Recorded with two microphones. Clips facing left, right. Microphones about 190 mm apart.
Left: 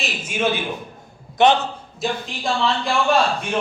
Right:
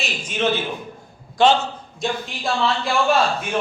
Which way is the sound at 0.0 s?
5° left (ahead or behind).